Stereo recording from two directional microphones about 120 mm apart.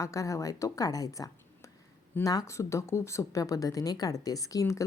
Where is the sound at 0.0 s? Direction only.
25° left (ahead or behind).